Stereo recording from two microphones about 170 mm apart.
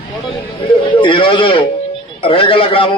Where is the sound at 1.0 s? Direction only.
30° left (ahead or behind).